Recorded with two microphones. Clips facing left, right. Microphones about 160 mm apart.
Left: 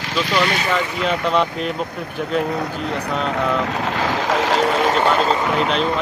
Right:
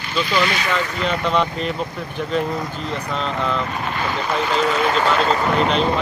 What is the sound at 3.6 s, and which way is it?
Speech, 90° left.